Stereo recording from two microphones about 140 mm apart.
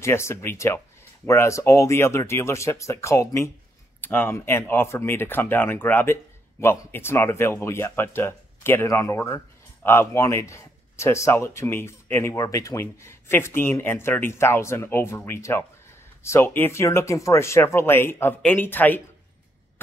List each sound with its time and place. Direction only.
0.0 s a man's voice: 20° left (ahead or behind)